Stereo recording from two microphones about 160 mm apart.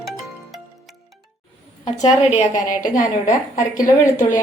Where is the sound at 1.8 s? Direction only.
45° left (ahead or behind).